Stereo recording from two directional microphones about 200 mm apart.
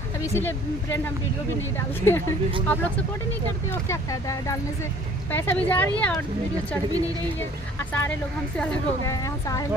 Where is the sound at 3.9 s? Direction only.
15° left (ahead or behind).